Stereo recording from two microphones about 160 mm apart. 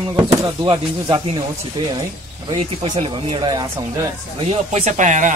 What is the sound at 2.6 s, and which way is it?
Speech, 45° right (ahead or behind).